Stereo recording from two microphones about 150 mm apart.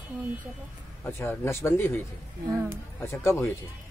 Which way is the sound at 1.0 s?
15° left (ahead or behind).